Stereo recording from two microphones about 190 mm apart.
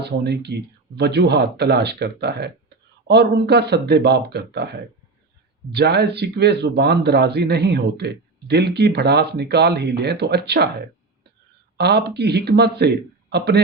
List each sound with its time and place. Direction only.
0.0 s speech: 60° right (ahead or behind)